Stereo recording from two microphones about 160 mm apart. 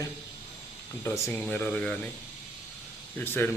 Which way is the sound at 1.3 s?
5° left (ahead or behind).